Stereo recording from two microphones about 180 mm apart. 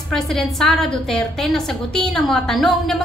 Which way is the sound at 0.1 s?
5° left (ahead or behind).